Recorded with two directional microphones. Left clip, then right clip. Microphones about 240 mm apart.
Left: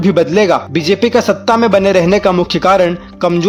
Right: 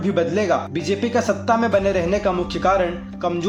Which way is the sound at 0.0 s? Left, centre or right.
Left.